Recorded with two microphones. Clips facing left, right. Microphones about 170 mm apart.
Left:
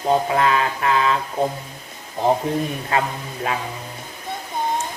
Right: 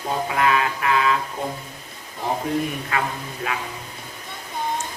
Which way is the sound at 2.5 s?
25° left (ahead or behind).